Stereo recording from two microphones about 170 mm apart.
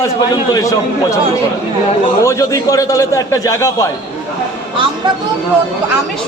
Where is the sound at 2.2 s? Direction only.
20° left (ahead or behind).